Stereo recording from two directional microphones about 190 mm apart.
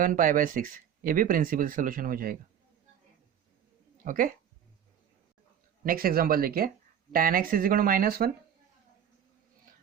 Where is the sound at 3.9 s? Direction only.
45° right (ahead or behind).